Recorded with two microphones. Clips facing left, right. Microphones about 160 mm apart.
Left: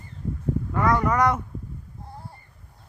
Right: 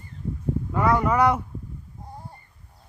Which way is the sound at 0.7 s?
10° right (ahead or behind).